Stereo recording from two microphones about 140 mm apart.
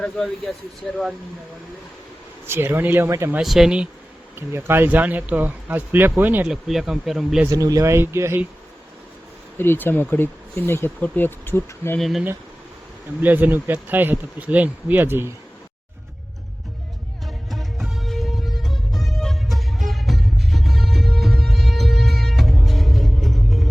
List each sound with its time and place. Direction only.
0.0 s speech: 10° left (ahead or behind)
2.5 s speech: 15° right (ahead or behind)
3.3 s speech: centre (ahead or behind)
4.4 s speech: 15° right (ahead or behind)
7.5 s speech: 25° right (ahead or behind)
9.6 s speech: 15° left (ahead or behind)
11.9 s speech: centre (ahead or behind)
13.2 s speech: 15° right (ahead or behind)
17.2 s music: centre (ahead or behind)